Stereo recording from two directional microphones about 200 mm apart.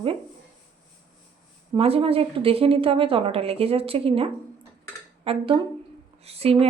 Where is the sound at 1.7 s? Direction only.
30° right (ahead or behind).